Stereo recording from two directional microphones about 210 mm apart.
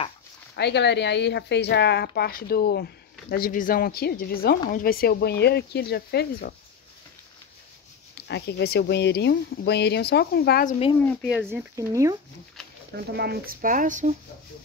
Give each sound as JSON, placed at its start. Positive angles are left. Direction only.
{"t": 0.6, "sound": "speech", "side_deg": 55}
{"t": 8.3, "sound": "speech", "side_deg": 55}
{"t": 11.0, "sound": "speech", "side_deg": 10}
{"t": 11.2, "sound": "speech", "side_deg": -5}
{"t": 12.9, "sound": "speech", "side_deg": -50}